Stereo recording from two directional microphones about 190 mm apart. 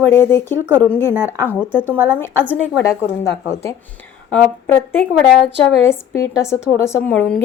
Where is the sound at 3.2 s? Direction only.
15° left (ahead or behind).